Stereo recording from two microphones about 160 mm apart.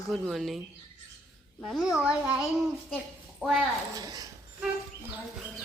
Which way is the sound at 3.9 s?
20° right (ahead or behind).